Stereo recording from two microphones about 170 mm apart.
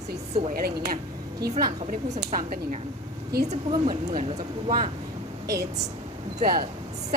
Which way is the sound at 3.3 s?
65° right (ahead or behind).